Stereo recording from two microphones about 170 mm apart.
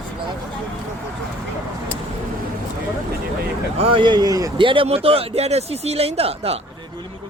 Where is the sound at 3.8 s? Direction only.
30° right (ahead or behind).